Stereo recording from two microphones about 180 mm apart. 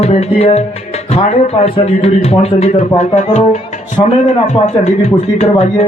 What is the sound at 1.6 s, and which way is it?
Music, 35° left (ahead or behind).